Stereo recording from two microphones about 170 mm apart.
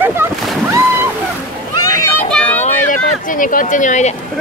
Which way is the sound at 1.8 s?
20° left (ahead or behind).